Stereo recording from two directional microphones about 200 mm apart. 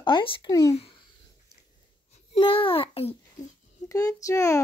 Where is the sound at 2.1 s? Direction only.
25° left (ahead or behind).